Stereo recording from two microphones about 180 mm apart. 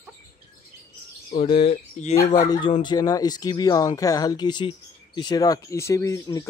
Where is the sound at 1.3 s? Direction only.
30° left (ahead or behind).